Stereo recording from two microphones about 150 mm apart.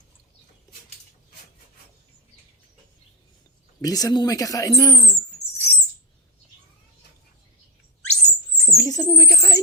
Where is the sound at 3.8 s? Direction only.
25° left (ahead or behind).